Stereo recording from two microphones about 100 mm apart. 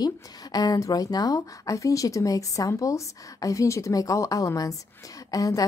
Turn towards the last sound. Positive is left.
turn(degrees=35)  # may be behind; listen again after turning